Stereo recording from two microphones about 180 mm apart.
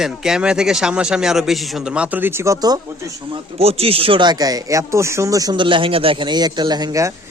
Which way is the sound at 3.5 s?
35° right (ahead or behind).